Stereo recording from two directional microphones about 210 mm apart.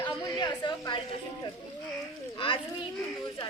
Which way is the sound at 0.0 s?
20° left (ahead or behind).